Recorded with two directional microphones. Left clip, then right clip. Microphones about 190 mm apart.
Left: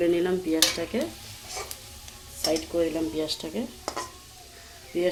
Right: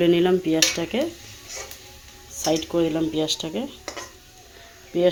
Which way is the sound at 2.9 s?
25° right (ahead or behind).